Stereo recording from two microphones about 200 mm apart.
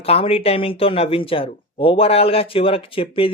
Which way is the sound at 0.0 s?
30° left (ahead or behind).